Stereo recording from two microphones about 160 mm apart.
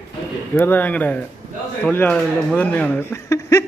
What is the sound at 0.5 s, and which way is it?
A man's voice, 15° left (ahead or behind).